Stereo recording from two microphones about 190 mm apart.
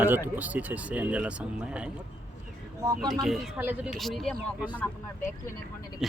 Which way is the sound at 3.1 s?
Centre (ahead or behind).